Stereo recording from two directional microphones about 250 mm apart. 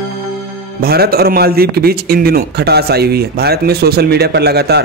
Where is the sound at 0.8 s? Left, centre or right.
Right.